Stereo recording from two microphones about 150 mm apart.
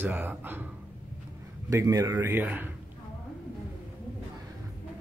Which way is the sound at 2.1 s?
15° right (ahead or behind).